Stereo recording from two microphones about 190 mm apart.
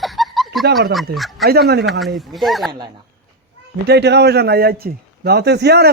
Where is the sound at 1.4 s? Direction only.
55° right (ahead or behind).